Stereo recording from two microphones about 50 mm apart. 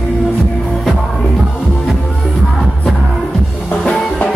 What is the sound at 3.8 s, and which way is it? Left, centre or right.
Drum kit, centre.